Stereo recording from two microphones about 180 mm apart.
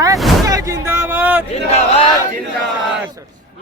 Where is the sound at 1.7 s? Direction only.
35° left (ahead or behind).